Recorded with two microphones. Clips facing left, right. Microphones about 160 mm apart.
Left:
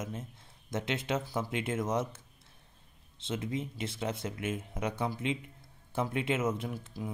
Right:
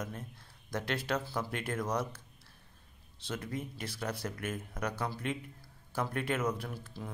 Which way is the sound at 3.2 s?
25° left (ahead or behind).